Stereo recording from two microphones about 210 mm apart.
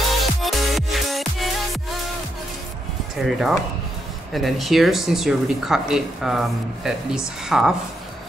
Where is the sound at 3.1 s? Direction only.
Centre (ahead or behind).